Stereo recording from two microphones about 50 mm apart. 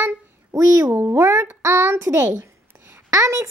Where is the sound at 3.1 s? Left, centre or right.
Right.